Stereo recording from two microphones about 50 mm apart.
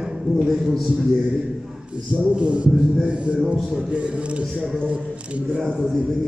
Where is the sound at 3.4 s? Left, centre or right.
Centre.